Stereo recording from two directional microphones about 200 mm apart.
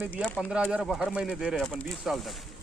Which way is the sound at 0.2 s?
Centre (ahead or behind).